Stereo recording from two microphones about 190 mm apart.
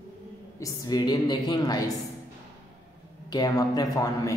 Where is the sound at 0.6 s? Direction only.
20° left (ahead or behind).